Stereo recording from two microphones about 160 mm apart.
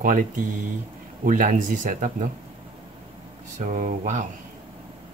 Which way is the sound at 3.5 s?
55° right (ahead or behind).